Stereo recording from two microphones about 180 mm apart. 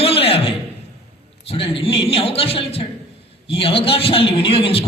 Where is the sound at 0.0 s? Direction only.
30° left (ahead or behind).